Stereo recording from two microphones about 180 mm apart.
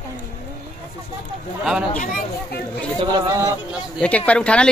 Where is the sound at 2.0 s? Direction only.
50° left (ahead or behind).